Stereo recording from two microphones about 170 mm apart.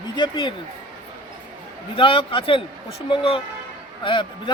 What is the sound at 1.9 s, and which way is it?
A man's voice, 30° left (ahead or behind).